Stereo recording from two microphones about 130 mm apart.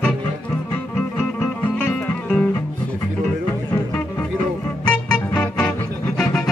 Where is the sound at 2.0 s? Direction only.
5° left (ahead or behind).